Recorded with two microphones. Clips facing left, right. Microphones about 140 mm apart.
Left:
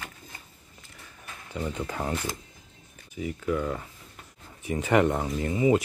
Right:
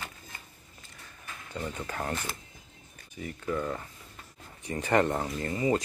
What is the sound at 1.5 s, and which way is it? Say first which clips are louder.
Speech: left 4 dB; 10° left (ahead or behind).